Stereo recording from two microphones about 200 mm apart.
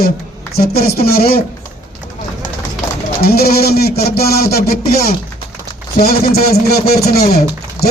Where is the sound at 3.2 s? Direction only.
50° left (ahead or behind).